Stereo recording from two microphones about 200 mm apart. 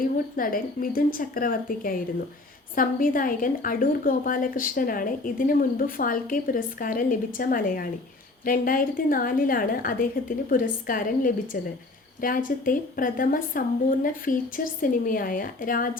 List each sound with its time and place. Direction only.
0.0 s a woman's voice: 45° left (ahead or behind)